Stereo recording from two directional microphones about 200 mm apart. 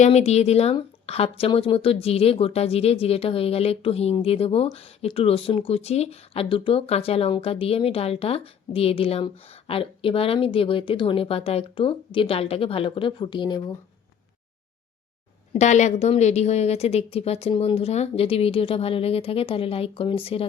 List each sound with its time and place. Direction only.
0.0 s a woman's voice: 30° left (ahead or behind)
15.5 s a woman's voice: 35° left (ahead or behind)